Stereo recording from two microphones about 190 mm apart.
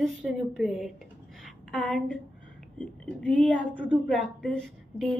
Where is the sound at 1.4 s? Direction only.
5° left (ahead or behind).